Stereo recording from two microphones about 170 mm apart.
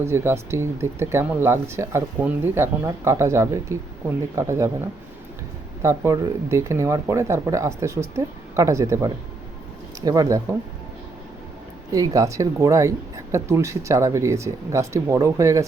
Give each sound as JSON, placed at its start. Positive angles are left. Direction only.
{"t": 0.0, "sound": "speech", "side_deg": -15}
{"t": 5.8, "sound": "speech", "side_deg": -15}
{"t": 11.9, "sound": "speech", "side_deg": -20}